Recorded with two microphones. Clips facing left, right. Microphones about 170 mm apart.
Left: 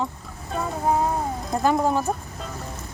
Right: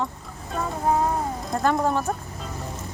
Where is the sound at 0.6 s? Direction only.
10° left (ahead or behind).